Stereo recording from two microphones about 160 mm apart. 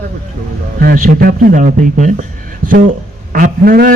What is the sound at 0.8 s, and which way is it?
Speech, 60° right (ahead or behind).